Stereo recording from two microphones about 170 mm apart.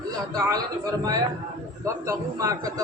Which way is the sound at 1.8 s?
20° right (ahead or behind).